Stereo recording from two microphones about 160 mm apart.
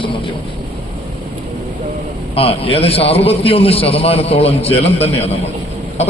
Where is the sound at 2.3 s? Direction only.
35° left (ahead or behind).